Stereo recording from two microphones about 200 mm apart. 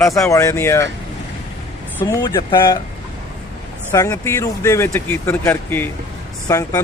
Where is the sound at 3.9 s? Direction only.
15° left (ahead or behind).